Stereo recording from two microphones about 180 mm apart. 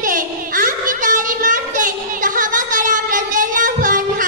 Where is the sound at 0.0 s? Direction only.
50° right (ahead or behind).